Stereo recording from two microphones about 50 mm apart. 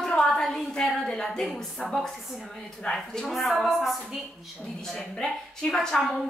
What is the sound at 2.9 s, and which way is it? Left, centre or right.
Speech, left.